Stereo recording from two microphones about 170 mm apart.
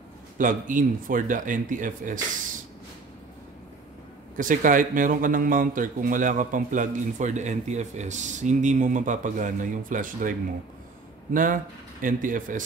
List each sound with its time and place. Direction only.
0.4 s speech: 50° right (ahead or behind)
4.4 s speech: 50° right (ahead or behind)
11.3 s speech: 50° right (ahead or behind)